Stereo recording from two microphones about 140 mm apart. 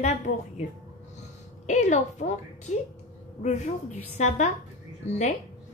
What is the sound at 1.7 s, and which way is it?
Speech, 55° left (ahead or behind).